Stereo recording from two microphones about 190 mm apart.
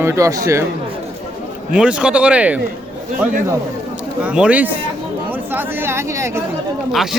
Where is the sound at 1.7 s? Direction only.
5° right (ahead or behind).